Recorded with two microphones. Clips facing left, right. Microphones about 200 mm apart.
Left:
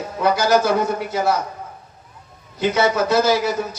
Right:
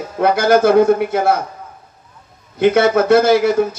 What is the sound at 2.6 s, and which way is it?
A man's voice, 55° right (ahead or behind).